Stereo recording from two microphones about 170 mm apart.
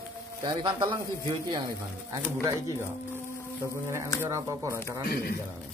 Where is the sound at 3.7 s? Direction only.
15° right (ahead or behind).